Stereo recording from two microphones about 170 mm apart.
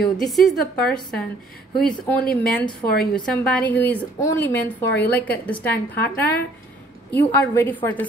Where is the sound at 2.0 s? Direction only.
5° left (ahead or behind).